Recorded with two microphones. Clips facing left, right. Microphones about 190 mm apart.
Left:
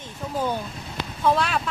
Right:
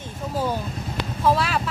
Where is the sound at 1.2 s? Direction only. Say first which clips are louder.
Right 1 dB; 5° right (ahead or behind).